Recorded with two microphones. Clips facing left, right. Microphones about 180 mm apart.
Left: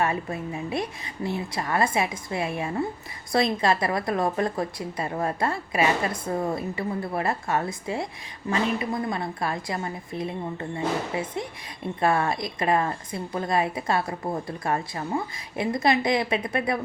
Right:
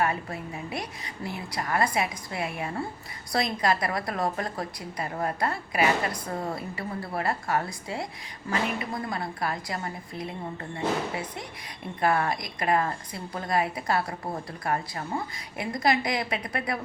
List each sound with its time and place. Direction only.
0.0 s speech: 25° left (ahead or behind)